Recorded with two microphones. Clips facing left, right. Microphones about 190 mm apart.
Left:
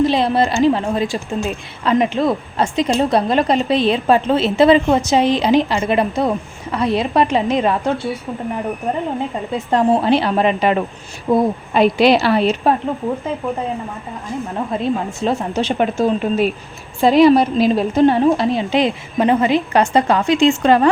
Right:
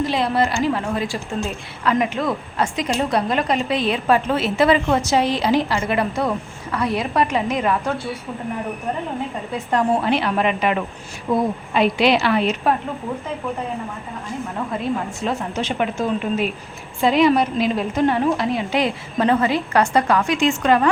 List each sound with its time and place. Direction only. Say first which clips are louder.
0.0 s a woman's voice: left 4 dB; 25° left (ahead or behind)
9.5 s a woman's voice: left 4 dB; 25° left (ahead or behind)
14.7 s a woman's voice: left 4 dB; 25° left (ahead or behind)